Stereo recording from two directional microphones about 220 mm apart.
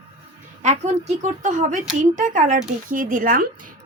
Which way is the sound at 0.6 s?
30° right (ahead or behind).